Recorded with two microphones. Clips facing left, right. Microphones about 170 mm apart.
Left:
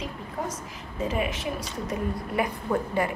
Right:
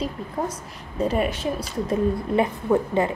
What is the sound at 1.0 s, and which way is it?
Speech, 40° right (ahead or behind).